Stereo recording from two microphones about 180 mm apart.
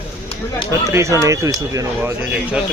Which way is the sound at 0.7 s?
15° right (ahead or behind).